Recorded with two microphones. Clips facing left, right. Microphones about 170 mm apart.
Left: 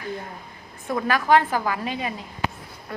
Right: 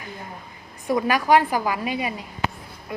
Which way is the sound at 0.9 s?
15° right (ahead or behind).